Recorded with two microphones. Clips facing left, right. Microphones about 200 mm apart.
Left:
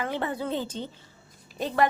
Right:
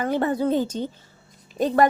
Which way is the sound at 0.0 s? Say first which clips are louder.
Right 7 dB; 45° right (ahead or behind).